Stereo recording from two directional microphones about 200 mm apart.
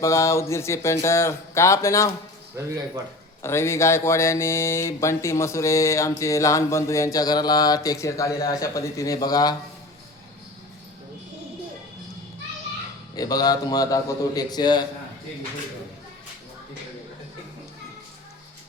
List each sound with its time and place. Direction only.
0.0 s speech: 15° left (ahead or behind)
3.4 s speech: 15° left (ahead or behind)
13.1 s a man's voice: 20° left (ahead or behind)